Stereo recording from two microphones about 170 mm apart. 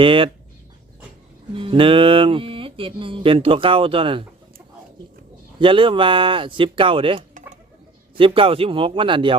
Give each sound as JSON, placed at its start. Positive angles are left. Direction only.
{"t": 0.0, "sound": "speech", "side_deg": -30}
{"t": 1.5, "sound": "speech", "side_deg": -30}
{"t": 5.5, "sound": "speech", "side_deg": -30}